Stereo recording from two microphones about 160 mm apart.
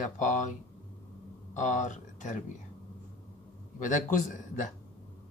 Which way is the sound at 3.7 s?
55° left (ahead or behind).